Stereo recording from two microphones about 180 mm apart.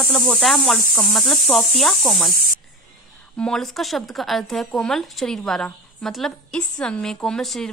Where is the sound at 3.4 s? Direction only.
Centre (ahead or behind).